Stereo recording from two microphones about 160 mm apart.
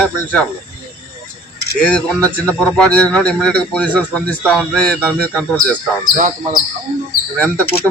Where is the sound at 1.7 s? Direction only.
5° left (ahead or behind).